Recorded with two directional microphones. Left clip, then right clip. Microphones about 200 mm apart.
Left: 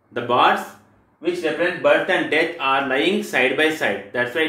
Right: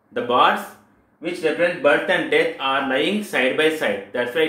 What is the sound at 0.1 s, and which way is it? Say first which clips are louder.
Speech: even; 5° left (ahead or behind).